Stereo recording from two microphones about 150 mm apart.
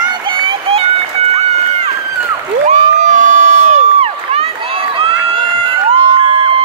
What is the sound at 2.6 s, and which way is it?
Crowd, 55° right (ahead or behind).